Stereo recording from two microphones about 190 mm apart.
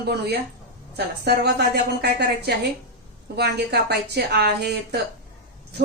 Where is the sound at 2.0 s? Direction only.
60° right (ahead or behind).